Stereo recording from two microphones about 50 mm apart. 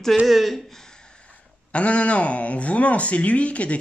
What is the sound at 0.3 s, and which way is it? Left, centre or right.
Speech, centre.